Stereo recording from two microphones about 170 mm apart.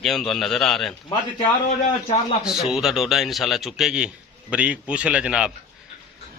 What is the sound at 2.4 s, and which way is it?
A man's voice, 5° right (ahead or behind).